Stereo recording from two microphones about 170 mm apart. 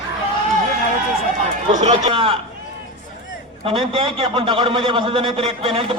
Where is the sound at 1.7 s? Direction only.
45° right (ahead or behind).